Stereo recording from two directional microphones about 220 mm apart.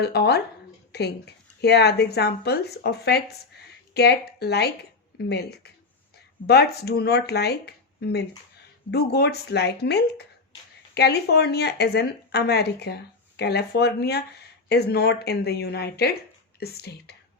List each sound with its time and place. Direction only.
0.0 s a woman's voice: 45° left (ahead or behind)